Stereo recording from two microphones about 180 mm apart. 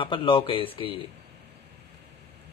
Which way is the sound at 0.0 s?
30° left (ahead or behind).